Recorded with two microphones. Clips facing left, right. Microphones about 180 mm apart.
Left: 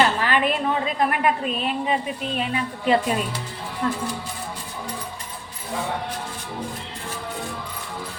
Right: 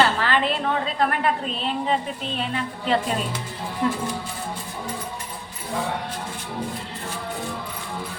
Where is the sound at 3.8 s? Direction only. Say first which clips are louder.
Right 1 dB; 15° right (ahead or behind).